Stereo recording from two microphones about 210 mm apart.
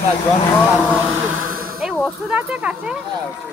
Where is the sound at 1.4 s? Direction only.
80° right.